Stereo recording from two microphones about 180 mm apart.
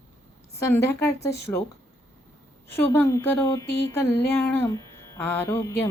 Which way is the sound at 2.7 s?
15° left (ahead or behind).